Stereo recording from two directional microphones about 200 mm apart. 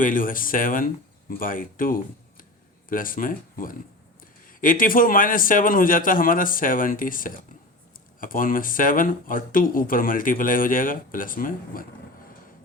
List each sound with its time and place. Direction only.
0.0 s speech: 40° left (ahead or behind)